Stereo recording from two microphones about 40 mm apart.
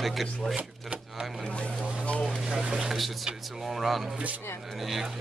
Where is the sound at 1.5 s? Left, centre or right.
Left.